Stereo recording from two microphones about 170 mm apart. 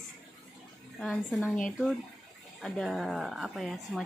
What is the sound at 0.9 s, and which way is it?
A woman's voice, centre (ahead or behind).